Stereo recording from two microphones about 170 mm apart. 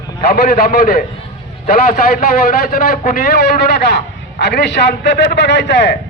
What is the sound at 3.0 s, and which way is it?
A man's voice, 65° left (ahead or behind).